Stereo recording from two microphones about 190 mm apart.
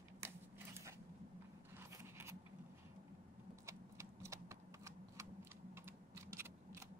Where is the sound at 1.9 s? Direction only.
15° right (ahead or behind).